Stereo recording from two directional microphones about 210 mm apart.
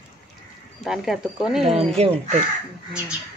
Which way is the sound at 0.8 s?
Centre (ahead or behind).